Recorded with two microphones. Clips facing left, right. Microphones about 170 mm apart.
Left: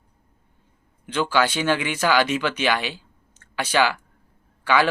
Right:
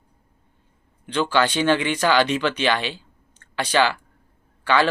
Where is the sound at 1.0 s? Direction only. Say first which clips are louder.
Right 1 dB; 10° left (ahead or behind).